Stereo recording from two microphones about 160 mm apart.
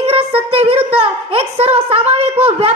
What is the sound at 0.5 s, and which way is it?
A woman's voice, 40° right (ahead or behind).